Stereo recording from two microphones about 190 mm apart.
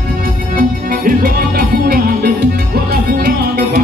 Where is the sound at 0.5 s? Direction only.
50° right (ahead or behind).